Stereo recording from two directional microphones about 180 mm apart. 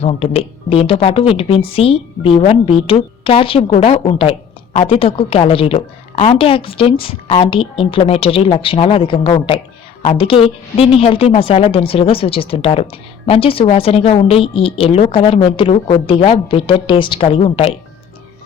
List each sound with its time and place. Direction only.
0.0 s a woman's voice: 35° left (ahead or behind)